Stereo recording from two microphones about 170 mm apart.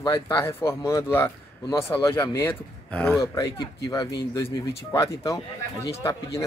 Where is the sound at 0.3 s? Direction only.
15° left (ahead or behind).